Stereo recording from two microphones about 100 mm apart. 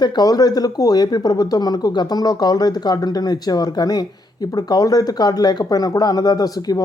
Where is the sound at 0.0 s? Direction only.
40° left (ahead or behind).